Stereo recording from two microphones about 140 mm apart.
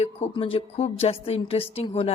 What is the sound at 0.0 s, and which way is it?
A woman's voice, 45° left (ahead or behind).